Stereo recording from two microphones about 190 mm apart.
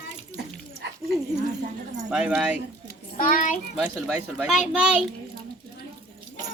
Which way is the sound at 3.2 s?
45° left (ahead or behind).